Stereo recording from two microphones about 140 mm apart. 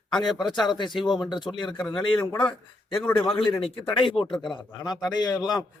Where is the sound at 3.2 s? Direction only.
40° left (ahead or behind).